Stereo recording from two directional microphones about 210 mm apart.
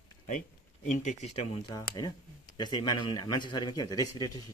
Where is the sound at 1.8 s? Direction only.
20° left (ahead or behind).